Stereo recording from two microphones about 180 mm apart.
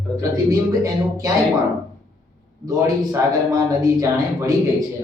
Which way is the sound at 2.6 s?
20° right (ahead or behind).